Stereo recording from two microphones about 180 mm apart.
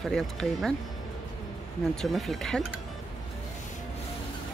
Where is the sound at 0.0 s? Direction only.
Centre (ahead or behind).